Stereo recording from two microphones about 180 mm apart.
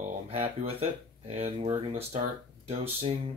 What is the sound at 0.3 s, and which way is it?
Speech, 35° right (ahead or behind).